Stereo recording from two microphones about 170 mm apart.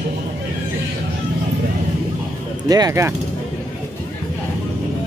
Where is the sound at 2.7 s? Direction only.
20° right (ahead or behind).